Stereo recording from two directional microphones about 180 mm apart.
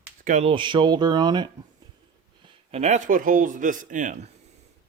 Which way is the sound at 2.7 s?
40° right (ahead or behind).